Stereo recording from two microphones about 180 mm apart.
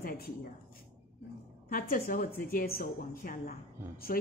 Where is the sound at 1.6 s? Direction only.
50° left (ahead or behind).